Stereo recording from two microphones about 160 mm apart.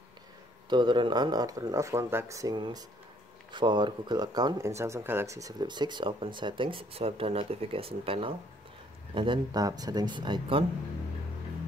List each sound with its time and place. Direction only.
0.7 s speech: 30° right (ahead or behind)